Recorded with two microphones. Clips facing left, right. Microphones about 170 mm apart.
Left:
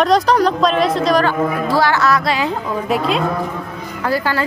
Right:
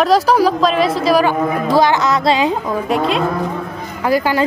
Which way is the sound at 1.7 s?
20° right (ahead or behind).